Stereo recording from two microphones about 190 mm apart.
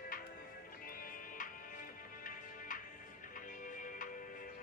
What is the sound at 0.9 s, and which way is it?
Music, 45° left (ahead or behind).